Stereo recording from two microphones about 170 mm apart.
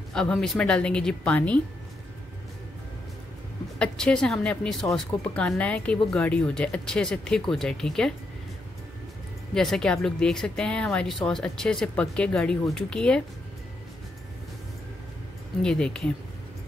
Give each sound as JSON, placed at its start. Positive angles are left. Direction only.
{"t": 0.1, "sound": "speech", "side_deg": 5}
{"t": 3.7, "sound": "speech", "side_deg": 5}
{"t": 9.5, "sound": "speech", "side_deg": 5}
{"t": 15.6, "sound": "speech", "side_deg": 5}